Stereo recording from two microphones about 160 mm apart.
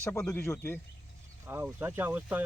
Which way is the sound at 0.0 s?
10° left (ahead or behind).